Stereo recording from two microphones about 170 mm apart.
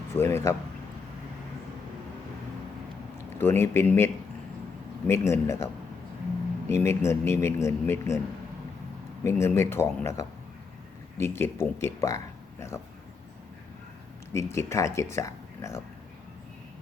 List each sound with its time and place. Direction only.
0.1 s speech: 15° left (ahead or behind)
3.4 s speech: 15° left (ahead or behind)
6.7 s speech: 15° left (ahead or behind)
9.2 s speech: 15° left (ahead or behind)
14.3 s speech: 15° left (ahead or behind)